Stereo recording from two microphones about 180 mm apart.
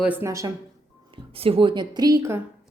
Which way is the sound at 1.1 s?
30° right (ahead or behind).